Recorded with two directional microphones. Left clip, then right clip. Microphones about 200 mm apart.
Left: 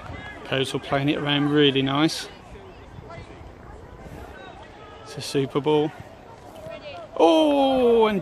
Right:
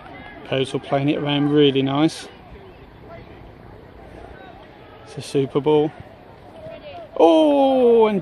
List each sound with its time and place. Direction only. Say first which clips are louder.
0.5 s speech: right 3 dB; centre (ahead or behind)
5.1 s speech: right 4 dB; centre (ahead or behind)
7.2 s speech: right 4 dB; centre (ahead or behind)